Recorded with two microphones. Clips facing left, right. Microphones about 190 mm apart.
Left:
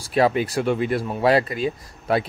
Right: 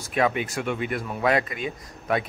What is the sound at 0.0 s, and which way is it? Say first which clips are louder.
Speech: left 5 dB; 35° left (ahead or behind).